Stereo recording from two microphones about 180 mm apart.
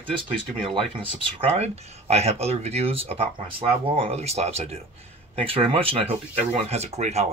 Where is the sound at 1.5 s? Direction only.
35° right (ahead or behind).